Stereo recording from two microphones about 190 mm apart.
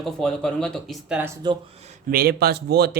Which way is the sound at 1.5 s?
25° right (ahead or behind).